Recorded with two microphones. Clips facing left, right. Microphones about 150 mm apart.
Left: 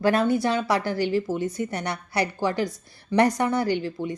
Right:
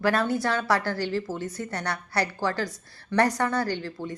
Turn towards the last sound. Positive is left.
turn(degrees=15)  # may be behind; listen again after turning